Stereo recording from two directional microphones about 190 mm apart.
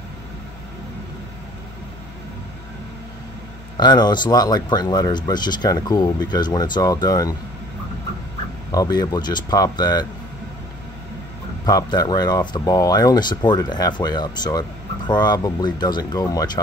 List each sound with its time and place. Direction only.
3.7 s speech: 20° left (ahead or behind)
8.7 s speech: 20° left (ahead or behind)
11.6 s speech: 20° left (ahead or behind)